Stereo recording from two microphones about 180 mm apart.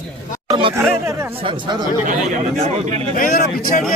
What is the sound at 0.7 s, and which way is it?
Speech, 15° right (ahead or behind).